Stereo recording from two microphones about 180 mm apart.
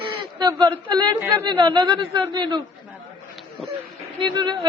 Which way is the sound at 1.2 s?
10° right (ahead or behind).